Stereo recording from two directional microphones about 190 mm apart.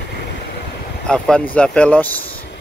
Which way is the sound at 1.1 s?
5° left (ahead or behind).